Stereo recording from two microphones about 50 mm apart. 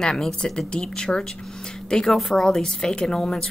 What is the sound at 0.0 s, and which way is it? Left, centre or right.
A woman's voice, centre.